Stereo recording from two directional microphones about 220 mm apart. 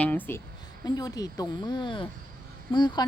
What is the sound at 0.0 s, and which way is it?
Speech, 5° left (ahead or behind).